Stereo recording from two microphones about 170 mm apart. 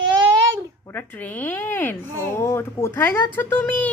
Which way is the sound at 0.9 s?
10° left (ahead or behind).